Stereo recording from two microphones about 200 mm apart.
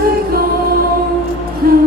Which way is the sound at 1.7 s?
50° right (ahead or behind).